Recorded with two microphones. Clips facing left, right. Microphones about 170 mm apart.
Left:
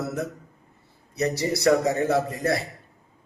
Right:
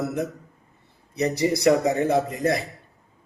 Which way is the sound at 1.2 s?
15° right (ahead or behind).